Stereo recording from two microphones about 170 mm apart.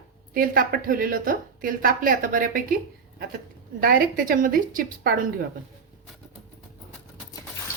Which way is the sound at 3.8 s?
60° right (ahead or behind).